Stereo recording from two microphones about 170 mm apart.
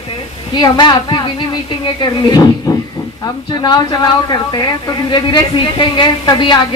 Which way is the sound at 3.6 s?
25° left (ahead or behind).